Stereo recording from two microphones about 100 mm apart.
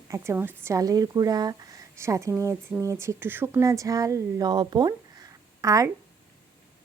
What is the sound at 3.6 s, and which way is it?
A woman's voice, 35° right (ahead or behind).